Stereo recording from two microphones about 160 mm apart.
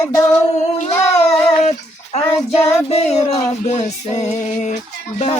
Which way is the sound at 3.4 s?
45° left (ahead or behind).